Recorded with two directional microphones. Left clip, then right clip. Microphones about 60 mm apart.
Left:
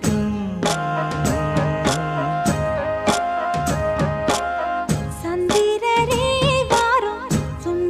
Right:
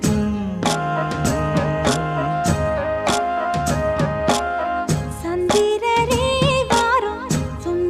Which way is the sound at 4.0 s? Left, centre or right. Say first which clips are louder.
Right 1 dB; right.